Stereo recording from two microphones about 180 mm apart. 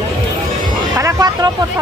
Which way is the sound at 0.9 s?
20° right (ahead or behind).